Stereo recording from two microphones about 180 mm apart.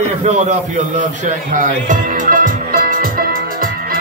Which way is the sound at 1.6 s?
50° right (ahead or behind).